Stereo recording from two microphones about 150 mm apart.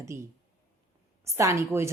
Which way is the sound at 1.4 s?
20° right (ahead or behind).